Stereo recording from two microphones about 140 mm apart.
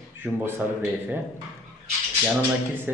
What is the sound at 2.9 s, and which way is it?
Speech, 15° right (ahead or behind).